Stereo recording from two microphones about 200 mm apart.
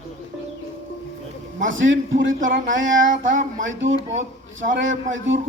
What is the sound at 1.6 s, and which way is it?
A woman's voice, 70° right (ahead or behind).